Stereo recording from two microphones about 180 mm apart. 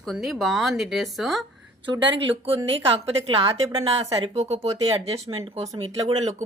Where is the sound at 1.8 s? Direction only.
25° right (ahead or behind).